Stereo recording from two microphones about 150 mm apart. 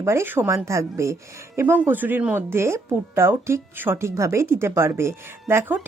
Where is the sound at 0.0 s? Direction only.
15° right (ahead or behind).